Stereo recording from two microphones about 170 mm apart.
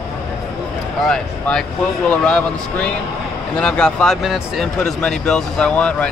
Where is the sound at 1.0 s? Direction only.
5° left (ahead or behind).